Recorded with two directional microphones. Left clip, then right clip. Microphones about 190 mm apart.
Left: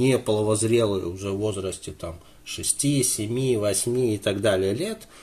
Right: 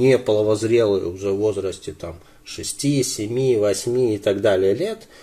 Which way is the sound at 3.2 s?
20° left (ahead or behind).